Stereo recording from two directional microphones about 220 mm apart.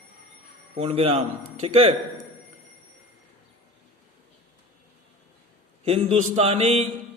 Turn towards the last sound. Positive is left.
turn(degrees=-30)  # may be behind; listen again after turning